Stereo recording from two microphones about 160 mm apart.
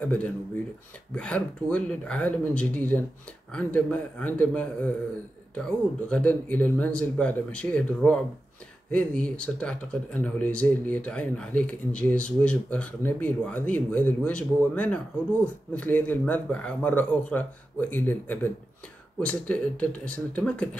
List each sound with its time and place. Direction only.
0.0 s speech: 10° left (ahead or behind)